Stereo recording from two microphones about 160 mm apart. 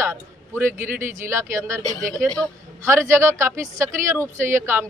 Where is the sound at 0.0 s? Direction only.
15° right (ahead or behind).